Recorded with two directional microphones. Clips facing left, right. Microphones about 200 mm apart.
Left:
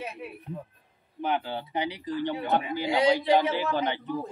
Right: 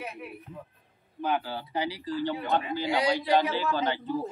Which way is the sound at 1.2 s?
20° left (ahead or behind).